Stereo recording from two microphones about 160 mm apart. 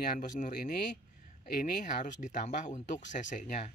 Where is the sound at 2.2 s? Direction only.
50° left (ahead or behind).